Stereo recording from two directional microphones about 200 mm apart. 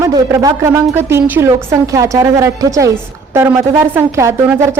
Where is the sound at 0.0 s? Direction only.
15° right (ahead or behind).